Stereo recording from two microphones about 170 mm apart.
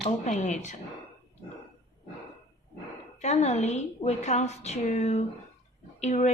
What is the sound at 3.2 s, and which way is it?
A woman's voice, 40° left (ahead or behind).